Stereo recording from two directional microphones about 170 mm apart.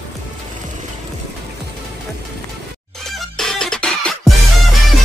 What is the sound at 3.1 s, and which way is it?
Music, 5° left (ahead or behind).